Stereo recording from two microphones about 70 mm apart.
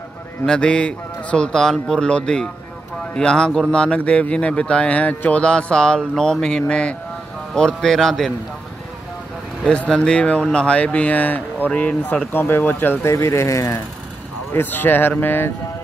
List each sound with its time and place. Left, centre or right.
0.5 s speech: centre
9.7 s speech: centre
12.3 s speech: left
13.1 s speech: left
14.5 s speech: left